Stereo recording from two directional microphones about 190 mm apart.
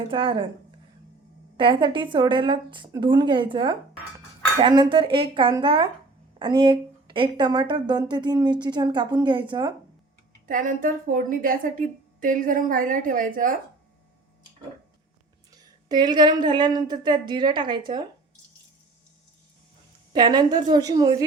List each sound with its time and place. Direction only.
0.1 s a woman's voice: 25° right (ahead or behind)
1.5 s a woman's voice: 25° right (ahead or behind)
10.4 s a woman's voice: 45° right (ahead or behind)
15.5 s a woman's voice: 20° right (ahead or behind)
20.1 s a woman's voice: 20° right (ahead or behind)